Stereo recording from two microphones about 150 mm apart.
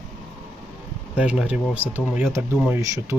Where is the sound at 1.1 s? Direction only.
5° right (ahead or behind).